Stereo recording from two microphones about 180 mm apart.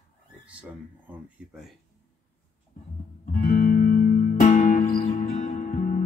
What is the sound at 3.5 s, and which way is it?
Music, 45° left (ahead or behind).